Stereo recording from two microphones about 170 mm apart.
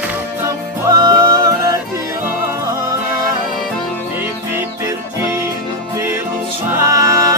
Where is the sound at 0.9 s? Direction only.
20° right (ahead or behind).